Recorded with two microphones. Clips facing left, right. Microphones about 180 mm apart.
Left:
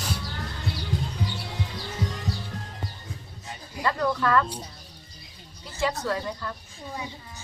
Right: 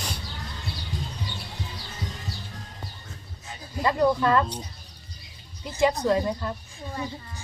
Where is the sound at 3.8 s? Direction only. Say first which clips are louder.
Right 4 dB; 20° right (ahead or behind).